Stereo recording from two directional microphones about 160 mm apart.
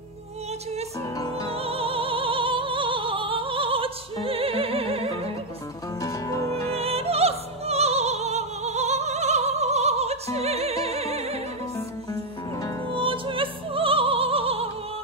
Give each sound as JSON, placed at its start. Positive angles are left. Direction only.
{"t": 1.1, "sound": "music", "side_deg": 25}
{"t": 1.5, "sound": "opera", "side_deg": -35}
{"t": 5.9, "sound": "music", "side_deg": 20}
{"t": 6.7, "sound": "music", "side_deg": -40}
{"t": 12.9, "sound": "music", "side_deg": -35}